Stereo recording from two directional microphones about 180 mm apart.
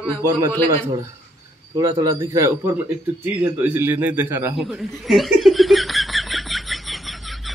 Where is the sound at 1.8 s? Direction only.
20° right (ahead or behind).